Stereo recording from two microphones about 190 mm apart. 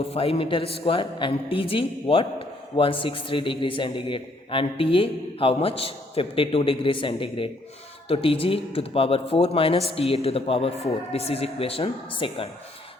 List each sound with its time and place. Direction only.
0.0 s a woman's voice: 30° left (ahead or behind)